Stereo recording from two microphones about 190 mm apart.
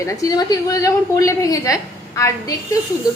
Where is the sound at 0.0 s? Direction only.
15° left (ahead or behind).